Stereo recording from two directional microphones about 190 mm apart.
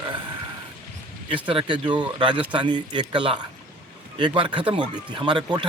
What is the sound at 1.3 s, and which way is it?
Speech, 25° right (ahead or behind).